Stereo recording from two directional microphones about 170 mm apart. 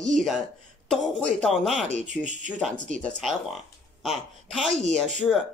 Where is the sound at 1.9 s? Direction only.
45° right (ahead or behind).